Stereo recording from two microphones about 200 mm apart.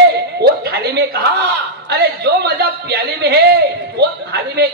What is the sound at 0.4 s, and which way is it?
Chuckle, 55° right (ahead or behind).